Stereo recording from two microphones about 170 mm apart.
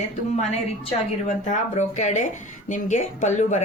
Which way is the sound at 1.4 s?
45° left (ahead or behind).